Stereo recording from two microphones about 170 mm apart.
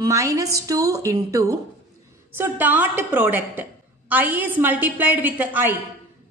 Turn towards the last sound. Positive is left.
turn(degrees=-10)  # may be behind; listen again after turning